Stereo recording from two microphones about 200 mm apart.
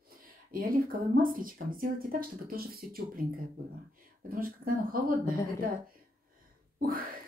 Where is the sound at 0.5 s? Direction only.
45° right (ahead or behind).